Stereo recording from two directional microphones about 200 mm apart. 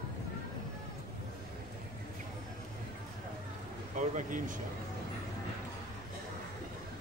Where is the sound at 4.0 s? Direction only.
40° right (ahead or behind).